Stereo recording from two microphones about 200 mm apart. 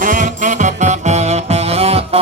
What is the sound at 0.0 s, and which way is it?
Music, 40° right (ahead or behind).